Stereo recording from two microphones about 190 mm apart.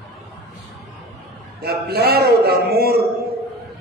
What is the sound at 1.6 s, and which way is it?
A man's voice, 55° right (ahead or behind).